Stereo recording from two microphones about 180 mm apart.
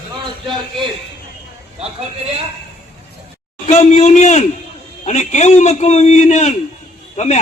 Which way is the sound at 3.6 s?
40° left (ahead or behind).